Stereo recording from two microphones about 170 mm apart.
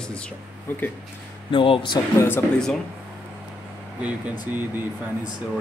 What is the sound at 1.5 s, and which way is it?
Speech, 30° left (ahead or behind).